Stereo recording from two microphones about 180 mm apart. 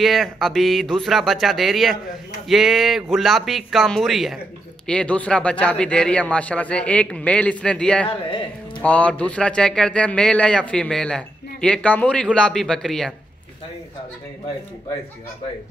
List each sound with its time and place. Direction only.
0.0 s a man's voice: centre (ahead or behind)
8.1 s speech: 30° left (ahead or behind)
8.8 s a man's voice: 10° left (ahead or behind)